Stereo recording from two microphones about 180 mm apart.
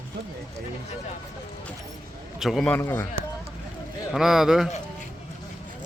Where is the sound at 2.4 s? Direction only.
Centre (ahead or behind).